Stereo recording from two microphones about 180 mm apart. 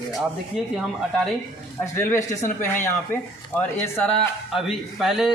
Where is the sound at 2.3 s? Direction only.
40° left (ahead or behind).